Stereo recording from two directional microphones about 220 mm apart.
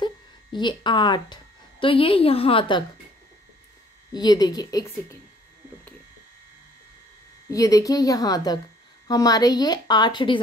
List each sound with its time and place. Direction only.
0.0 s a woman's voice: 20° left (ahead or behind)
4.1 s a woman's voice: 20° left (ahead or behind)
7.4 s a woman's voice: 15° left (ahead or behind)